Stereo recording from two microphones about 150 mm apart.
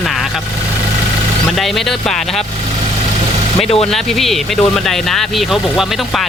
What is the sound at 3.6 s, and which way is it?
Speech, 40° left (ahead or behind).